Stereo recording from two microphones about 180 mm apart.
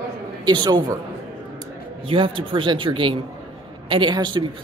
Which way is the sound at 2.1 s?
30° right (ahead or behind).